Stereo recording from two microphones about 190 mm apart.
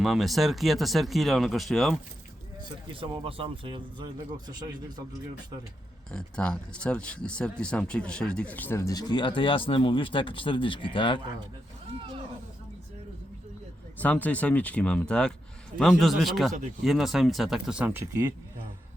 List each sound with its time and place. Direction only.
0.0 s speech: centre (ahead or behind)
2.9 s speech: 30° right (ahead or behind)
6.1 s speech: 5° left (ahead or behind); by 11.2 s 25° left (ahead or behind)
14.0 s speech: 10° left (ahead or behind); by 18.3 s 15° right (ahead or behind)